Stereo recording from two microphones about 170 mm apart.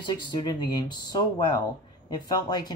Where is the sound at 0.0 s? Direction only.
25° left (ahead or behind).